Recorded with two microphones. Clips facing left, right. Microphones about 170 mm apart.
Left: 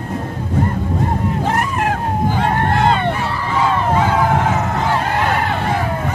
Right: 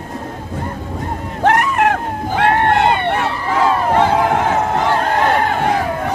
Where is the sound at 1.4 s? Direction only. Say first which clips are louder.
Right 5 dB; 70° right (ahead or behind).